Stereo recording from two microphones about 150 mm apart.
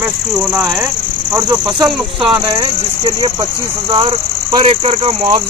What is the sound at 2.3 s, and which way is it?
Speech, 20° right (ahead or behind).